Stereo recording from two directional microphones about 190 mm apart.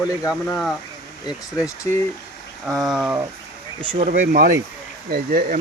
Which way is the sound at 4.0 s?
50° right (ahead or behind).